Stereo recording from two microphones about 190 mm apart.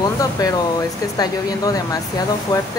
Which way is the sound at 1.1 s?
20° left (ahead or behind).